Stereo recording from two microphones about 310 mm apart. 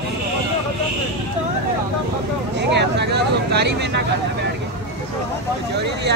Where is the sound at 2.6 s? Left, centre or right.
Right.